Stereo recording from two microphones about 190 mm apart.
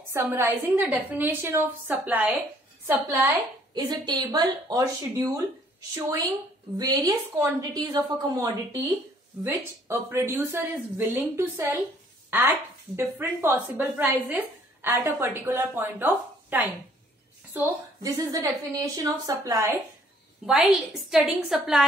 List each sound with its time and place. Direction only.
0.1 s a woman's voice: 10° right (ahead or behind)
7.7 s a woman's voice: 20° right (ahead or behind)
20.4 s a woman's voice: 5° right (ahead or behind)